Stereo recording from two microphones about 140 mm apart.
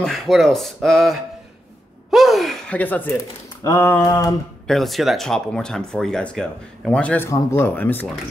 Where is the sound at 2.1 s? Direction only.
Centre (ahead or behind); by 4.3 s 25° left (ahead or behind).